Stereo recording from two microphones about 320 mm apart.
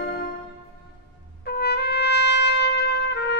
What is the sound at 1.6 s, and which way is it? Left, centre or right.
Trumpet, left.